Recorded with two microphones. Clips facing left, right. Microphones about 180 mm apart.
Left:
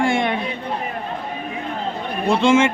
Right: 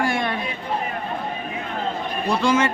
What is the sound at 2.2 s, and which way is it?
Speech, 25° left (ahead or behind).